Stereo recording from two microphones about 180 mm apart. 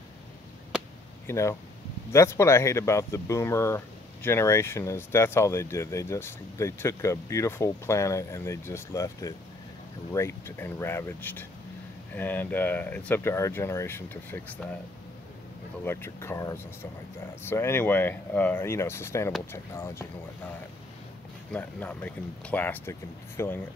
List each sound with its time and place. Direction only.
1.2 s speech: 15° left (ahead or behind)
15.8 s speech: 15° left (ahead or behind)
21.5 s speech: 10° left (ahead or behind)